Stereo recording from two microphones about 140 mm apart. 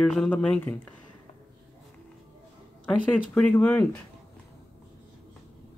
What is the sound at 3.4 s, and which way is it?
Speech, 10° left (ahead or behind).